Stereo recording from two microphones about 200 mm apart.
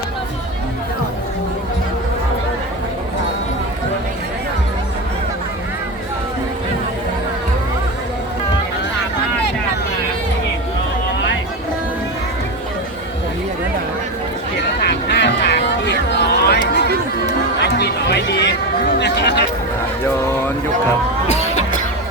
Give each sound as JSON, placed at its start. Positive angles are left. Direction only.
{"t": 14.8, "sound": "quack", "side_deg": 55}
{"t": 17.7, "sound": "chatter", "side_deg": 55}
{"t": 21.2, "sound": "music", "side_deg": 35}